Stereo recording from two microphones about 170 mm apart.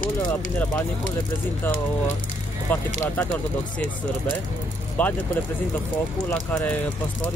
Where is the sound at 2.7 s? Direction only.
10° left (ahead or behind).